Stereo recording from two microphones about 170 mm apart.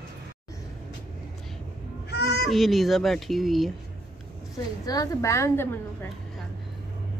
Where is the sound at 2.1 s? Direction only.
75° left (ahead or behind).